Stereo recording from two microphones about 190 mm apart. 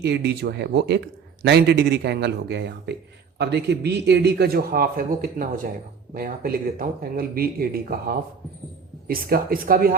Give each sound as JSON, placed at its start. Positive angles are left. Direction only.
{"t": 0.0, "sound": "speech", "side_deg": -60}